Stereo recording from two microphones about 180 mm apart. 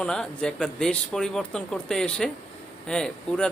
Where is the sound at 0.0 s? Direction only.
5° left (ahead or behind).